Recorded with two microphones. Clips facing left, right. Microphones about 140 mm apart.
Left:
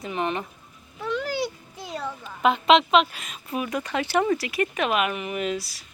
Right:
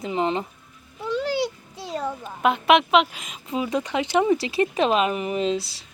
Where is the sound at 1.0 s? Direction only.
30° right (ahead or behind).